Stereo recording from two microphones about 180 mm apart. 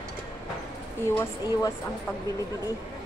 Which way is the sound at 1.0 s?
15° left (ahead or behind).